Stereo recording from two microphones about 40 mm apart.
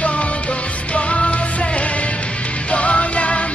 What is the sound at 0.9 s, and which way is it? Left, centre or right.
Music, left.